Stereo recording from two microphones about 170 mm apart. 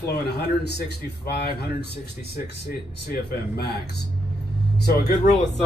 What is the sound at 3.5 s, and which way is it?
Speech, 70° left (ahead or behind).